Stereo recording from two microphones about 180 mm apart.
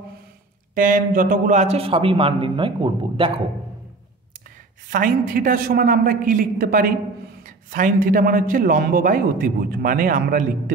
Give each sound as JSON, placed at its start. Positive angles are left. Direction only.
{"t": 0.7, "sound": "a man's voice", "side_deg": -50}
{"t": 4.8, "sound": "a man's voice", "side_deg": -50}